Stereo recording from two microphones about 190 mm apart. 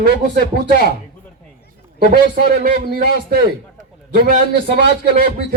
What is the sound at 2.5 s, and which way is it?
Speech, 50° right (ahead or behind).